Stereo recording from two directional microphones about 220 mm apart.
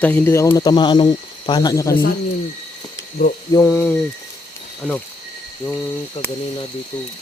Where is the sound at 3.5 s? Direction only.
15° left (ahead or behind).